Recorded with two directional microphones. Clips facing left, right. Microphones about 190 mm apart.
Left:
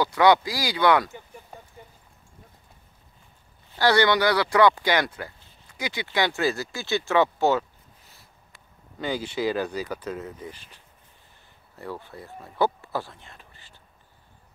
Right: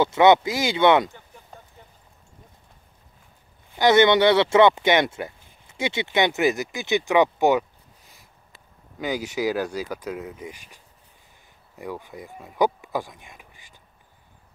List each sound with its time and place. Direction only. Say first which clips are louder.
0.0 s speech: right 3 dB; 25° right (ahead or behind)
1.5 s a sound: left 1 dB; 10° left (ahead or behind)
3.7 s speech: right 4 dB; 20° right (ahead or behind)
9.0 s speech: right 1 dB; 10° right (ahead or behind)